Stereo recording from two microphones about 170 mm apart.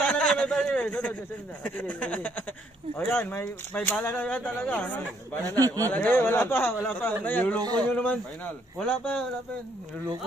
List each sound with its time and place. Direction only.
0.0 s a sound: 5° left (ahead or behind)
2.0 s speech: 10° left (ahead or behind)
7.6 s speech: 25° right (ahead or behind)
7.9 s speech: 10° left (ahead or behind)